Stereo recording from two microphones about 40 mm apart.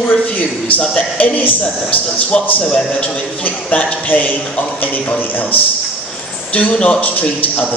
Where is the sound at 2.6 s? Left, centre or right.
Left.